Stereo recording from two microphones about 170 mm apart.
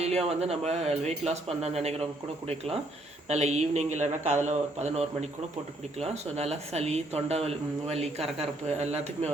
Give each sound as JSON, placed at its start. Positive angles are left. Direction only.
{"t": 0.0, "sound": "speech", "side_deg": -40}
{"t": 3.2, "sound": "speech", "side_deg": -40}